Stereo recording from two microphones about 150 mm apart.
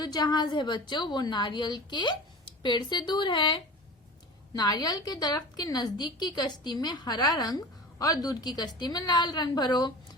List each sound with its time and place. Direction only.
0.0 s a woman's voice: 25° left (ahead or behind)